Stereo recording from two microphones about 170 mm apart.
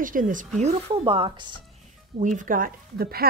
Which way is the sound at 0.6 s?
35° right (ahead or behind).